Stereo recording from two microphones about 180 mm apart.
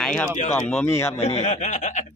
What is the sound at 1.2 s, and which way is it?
Speech, 35° left (ahead or behind).